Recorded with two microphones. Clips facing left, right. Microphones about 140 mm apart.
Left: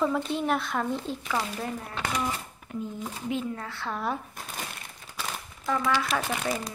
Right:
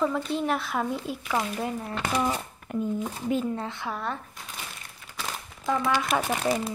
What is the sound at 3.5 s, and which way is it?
Speech, 20° right (ahead or behind).